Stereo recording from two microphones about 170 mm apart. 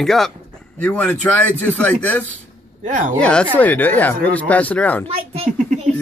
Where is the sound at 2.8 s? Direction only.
50° right (ahead or behind).